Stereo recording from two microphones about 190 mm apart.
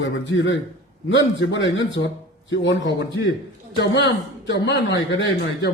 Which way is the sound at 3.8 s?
70° left (ahead or behind).